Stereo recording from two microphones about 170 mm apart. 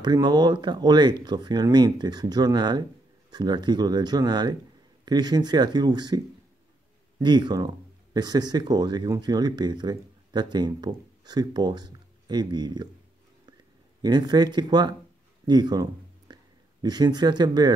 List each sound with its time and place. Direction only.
0.0 s speech: 25° right (ahead or behind)
14.0 s speech: 25° right (ahead or behind)
15.4 s a sound: 25° right (ahead or behind)
16.8 s speech: 25° right (ahead or behind)